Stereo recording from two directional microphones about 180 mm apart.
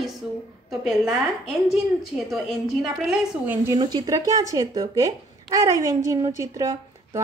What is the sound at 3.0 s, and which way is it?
Speech, 10° right (ahead or behind).